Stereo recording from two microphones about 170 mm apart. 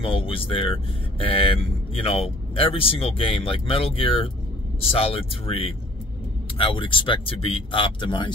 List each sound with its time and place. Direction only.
0.0 s speech: 35° left (ahead or behind)